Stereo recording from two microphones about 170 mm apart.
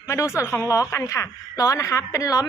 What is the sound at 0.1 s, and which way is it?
A woman's voice, 15° left (ahead or behind).